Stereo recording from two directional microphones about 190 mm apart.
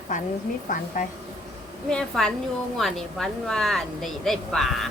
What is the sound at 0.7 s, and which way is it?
Speech, 45° left (ahead or behind).